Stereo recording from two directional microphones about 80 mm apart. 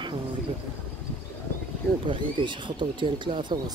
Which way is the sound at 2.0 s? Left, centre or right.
Right.